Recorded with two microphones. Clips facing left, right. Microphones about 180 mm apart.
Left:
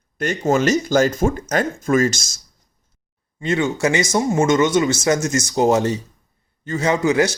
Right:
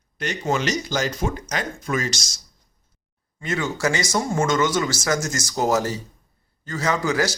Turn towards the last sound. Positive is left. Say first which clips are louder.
# left 5 dB
turn(degrees=25)  # may be behind; listen again after turning